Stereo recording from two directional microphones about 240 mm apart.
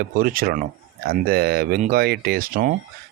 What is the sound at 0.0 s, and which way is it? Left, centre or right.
Speech, right.